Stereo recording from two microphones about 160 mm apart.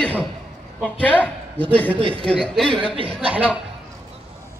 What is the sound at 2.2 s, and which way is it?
Speech, 5° left (ahead or behind).